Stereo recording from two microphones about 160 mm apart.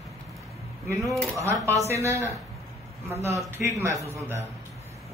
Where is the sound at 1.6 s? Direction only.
15° right (ahead or behind).